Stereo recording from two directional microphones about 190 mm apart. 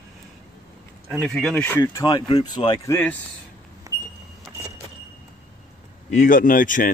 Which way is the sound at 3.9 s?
15° right (ahead or behind).